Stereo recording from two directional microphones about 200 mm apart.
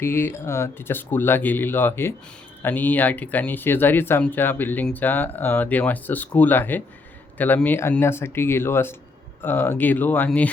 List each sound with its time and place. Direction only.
0.0 s speech: 10° left (ahead or behind)